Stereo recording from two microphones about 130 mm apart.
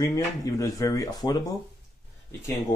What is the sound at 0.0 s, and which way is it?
Speech, 25° left (ahead or behind).